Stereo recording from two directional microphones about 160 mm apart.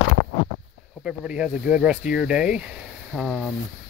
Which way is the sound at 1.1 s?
5° right (ahead or behind).